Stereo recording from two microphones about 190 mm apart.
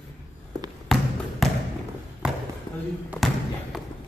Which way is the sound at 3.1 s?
Centre (ahead or behind).